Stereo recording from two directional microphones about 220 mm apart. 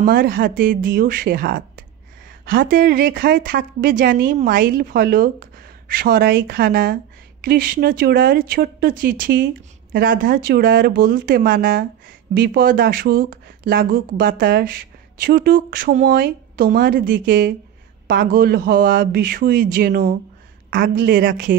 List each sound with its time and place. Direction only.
0.0 s speech: 40° right (ahead or behind)